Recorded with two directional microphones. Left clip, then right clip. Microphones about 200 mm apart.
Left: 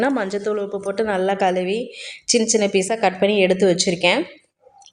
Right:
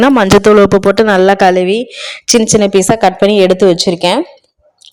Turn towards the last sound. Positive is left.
turn(degrees=-35)  # may be behind; listen again after turning